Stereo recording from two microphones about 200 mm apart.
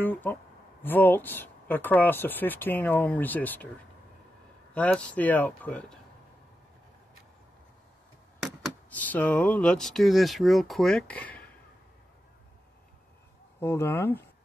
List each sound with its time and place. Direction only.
0.0 s speech: 10° left (ahead or behind)
4.7 s speech: 5° left (ahead or behind)
8.9 s speech: 10° left (ahead or behind)
13.6 s speech: 10° left (ahead or behind)